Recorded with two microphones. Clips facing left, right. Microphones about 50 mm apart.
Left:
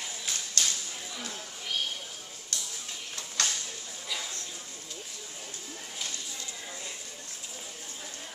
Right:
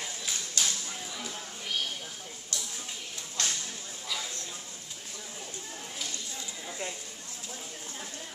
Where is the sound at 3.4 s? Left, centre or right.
Left.